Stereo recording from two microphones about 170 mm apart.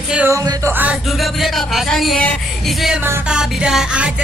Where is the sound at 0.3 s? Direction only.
20° right (ahead or behind).